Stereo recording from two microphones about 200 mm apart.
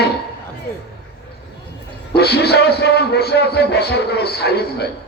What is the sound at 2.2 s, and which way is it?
A man's voice, 55° left (ahead or behind).